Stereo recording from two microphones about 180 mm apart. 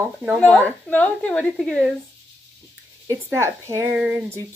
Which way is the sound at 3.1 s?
15° right (ahead or behind).